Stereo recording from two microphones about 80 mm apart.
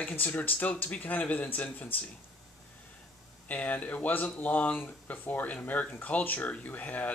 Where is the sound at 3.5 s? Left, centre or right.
Centre.